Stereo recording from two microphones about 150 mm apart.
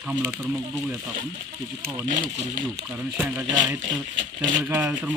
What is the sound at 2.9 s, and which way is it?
Speech, 10° right (ahead or behind).